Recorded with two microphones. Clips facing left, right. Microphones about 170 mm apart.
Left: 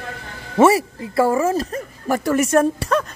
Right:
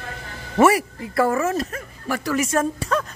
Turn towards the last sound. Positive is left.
turn(degrees=65)  # may be behind; listen again after turning